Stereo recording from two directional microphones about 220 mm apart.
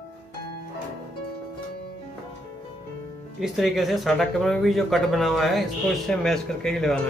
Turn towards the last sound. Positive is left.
turn(degrees=0)  # may be behind; listen again after turning